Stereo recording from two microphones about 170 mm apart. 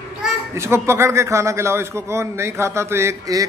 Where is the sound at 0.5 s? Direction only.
15° right (ahead or behind).